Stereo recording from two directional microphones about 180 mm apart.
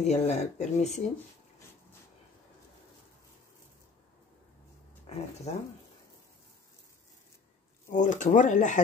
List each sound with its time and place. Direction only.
0.0 s speech: 40° left (ahead or behind)
5.1 s speech: 35° left (ahead or behind)
7.9 s speech: 45° left (ahead or behind)